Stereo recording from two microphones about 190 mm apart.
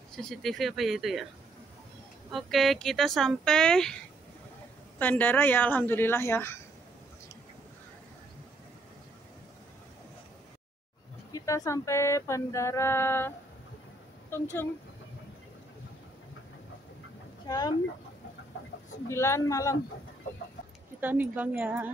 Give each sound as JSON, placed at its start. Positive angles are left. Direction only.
{"t": 0.1, "sound": "speech", "side_deg": 5}
{"t": 2.3, "sound": "speech", "side_deg": 0}
{"t": 4.9, "sound": "female singing", "side_deg": 10}
{"t": 11.3, "sound": "female singing", "side_deg": 15}
{"t": 14.3, "sound": "female singing", "side_deg": 10}
{"t": 17.5, "sound": "speech", "side_deg": 20}
{"t": 19.0, "sound": "female singing", "side_deg": 15}
{"t": 21.0, "sound": "speech", "side_deg": -10}